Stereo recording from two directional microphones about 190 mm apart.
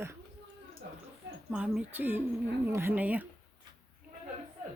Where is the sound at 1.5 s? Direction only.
5° right (ahead or behind).